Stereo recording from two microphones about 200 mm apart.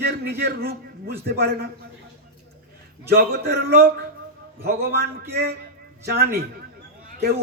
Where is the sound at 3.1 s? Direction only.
50° right (ahead or behind).